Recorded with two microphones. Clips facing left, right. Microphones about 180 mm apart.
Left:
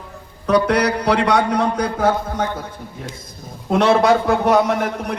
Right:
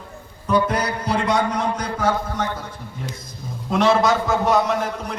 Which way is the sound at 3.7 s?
60° left (ahead or behind).